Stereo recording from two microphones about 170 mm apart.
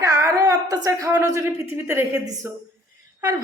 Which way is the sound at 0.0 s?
20° right (ahead or behind).